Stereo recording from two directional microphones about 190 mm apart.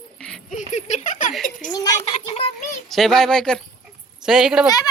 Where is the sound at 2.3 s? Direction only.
35° left (ahead or behind).